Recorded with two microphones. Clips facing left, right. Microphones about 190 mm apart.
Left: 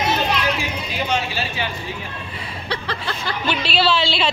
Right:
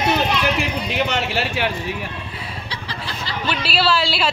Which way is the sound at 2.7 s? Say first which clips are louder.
Left 8 dB; 60° left (ahead or behind).